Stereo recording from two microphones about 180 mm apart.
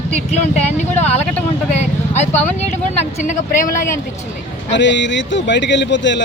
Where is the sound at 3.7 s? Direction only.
15° left (ahead or behind).